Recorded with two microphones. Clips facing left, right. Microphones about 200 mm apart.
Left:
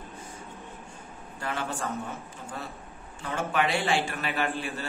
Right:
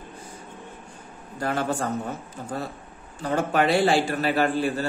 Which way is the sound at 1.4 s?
40° right (ahead or behind).